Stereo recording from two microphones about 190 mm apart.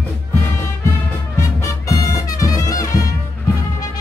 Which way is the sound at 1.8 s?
15° left (ahead or behind).